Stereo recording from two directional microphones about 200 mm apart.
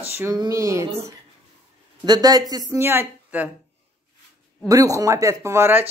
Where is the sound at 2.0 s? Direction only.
20° right (ahead or behind).